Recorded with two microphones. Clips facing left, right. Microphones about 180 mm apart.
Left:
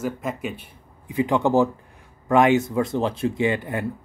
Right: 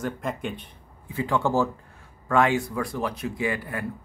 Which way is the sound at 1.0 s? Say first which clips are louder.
Left 4 dB; 15° left (ahead or behind).